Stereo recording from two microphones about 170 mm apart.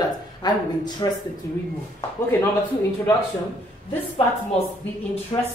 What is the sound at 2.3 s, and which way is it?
Speech, 15° left (ahead or behind).